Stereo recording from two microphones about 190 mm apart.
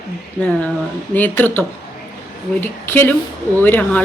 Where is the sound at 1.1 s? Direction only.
10° left (ahead or behind).